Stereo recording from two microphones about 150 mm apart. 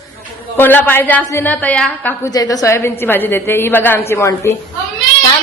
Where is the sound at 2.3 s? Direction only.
25° left (ahead or behind).